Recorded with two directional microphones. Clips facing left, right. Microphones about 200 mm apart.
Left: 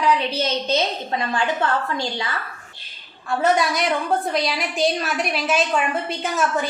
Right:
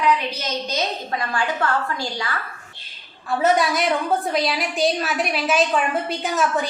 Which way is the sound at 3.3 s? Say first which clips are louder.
Right 1 dB; centre (ahead or behind).